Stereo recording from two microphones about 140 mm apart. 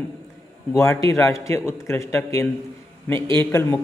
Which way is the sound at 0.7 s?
20° left (ahead or behind).